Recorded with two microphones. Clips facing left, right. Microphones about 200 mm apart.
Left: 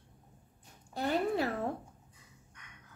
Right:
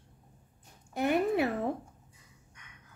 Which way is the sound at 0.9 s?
15° right (ahead or behind).